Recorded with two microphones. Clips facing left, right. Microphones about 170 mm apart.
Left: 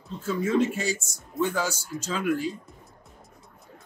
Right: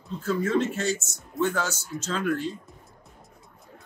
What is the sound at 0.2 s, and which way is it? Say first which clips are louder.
Speech: left 1 dB; 5° left (ahead or behind).